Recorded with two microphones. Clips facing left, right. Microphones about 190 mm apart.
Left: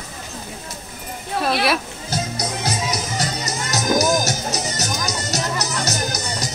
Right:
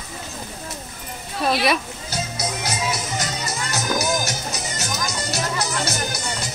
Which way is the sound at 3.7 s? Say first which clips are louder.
Left 5 dB; 40° left (ahead or behind).